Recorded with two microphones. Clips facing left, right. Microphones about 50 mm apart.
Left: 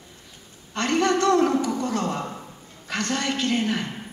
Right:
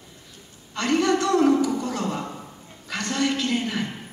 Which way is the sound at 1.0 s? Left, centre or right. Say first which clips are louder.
Left 1 dB; left.